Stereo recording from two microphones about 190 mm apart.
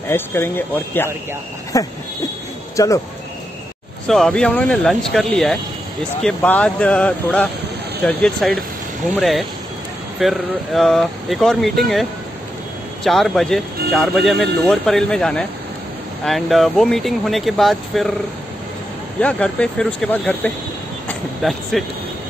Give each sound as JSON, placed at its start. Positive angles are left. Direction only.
{"t": 0.1, "sound": "speech", "side_deg": 10}
{"t": 4.1, "sound": "speech", "side_deg": 5}
{"t": 19.1, "sound": "speech", "side_deg": 5}
{"t": 21.1, "sound": "vehicle", "side_deg": 0}